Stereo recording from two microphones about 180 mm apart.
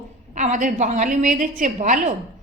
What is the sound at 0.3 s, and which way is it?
A woman's voice, 40° right (ahead or behind).